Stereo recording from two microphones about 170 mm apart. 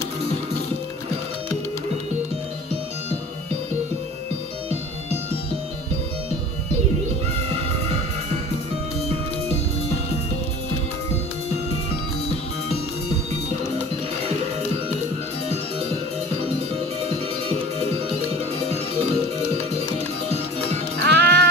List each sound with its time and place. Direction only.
17.0 s music: 35° right (ahead or behind)
21.0 s music: 75° right (ahead or behind)